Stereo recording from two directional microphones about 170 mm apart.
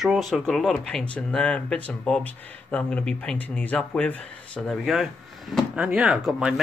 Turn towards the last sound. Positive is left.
turn(degrees=-5)  # may be behind; listen again after turning